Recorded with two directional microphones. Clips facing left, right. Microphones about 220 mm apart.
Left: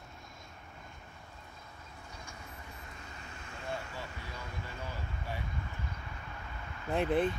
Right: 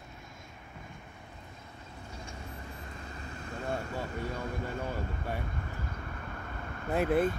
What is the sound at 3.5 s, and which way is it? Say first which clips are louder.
Vehicle: right 6 dB; 50° right (ahead or behind).